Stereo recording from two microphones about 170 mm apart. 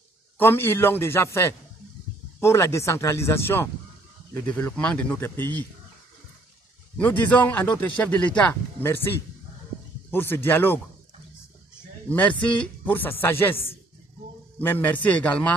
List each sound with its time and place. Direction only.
0.4 s speech: 15° left (ahead or behind)
7.0 s speech: 10° left (ahead or behind)
10.1 s speech: 15° left (ahead or behind)
12.1 s speech: 10° left (ahead or behind)